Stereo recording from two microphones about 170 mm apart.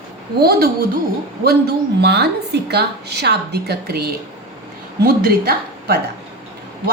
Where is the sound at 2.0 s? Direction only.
80° right.